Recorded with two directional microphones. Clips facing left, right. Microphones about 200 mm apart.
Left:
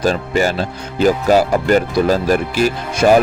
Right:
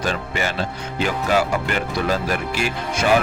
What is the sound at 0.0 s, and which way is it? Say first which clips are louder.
A man's voice: left 8 dB; 40° left (ahead or behind).